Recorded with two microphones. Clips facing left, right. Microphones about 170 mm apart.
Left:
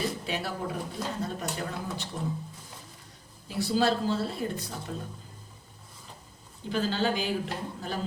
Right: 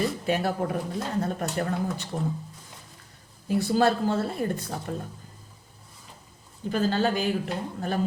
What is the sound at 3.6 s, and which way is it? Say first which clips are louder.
A woman's voice: right 2 dB; 50° right (ahead or behind).